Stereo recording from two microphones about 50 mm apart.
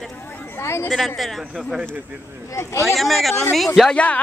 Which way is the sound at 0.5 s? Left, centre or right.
Left.